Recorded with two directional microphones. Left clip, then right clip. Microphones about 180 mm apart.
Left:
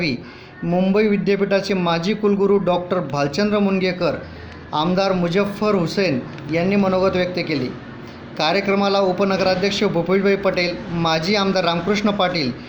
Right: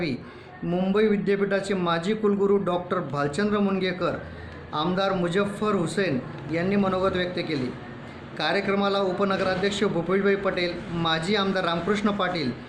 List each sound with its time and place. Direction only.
0.7 s a man's voice: 15° left (ahead or behind)